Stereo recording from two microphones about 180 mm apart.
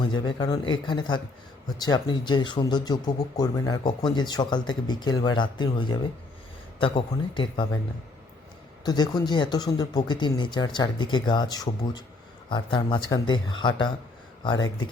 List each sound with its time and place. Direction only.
0.1 s speech: 25° left (ahead or behind)
8.8 s speech: 20° left (ahead or behind)